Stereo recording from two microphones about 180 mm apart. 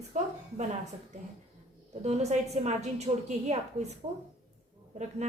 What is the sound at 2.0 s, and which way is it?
A woman's voice, 40° right (ahead or behind).